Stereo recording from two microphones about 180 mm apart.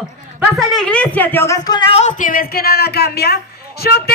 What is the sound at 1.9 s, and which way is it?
A man's voice, 40° left (ahead or behind).